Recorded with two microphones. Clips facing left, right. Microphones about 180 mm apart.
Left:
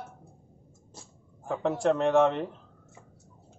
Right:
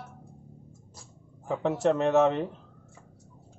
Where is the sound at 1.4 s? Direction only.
5° right (ahead or behind).